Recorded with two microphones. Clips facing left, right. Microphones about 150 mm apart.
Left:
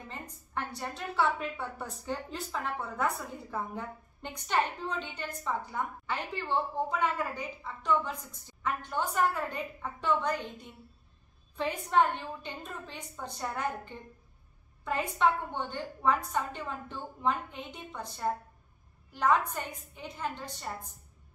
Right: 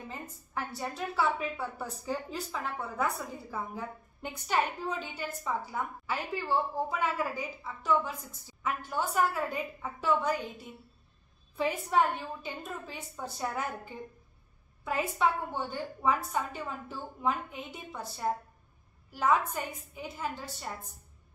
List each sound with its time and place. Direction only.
0.1 s a woman's voice: 5° right (ahead or behind)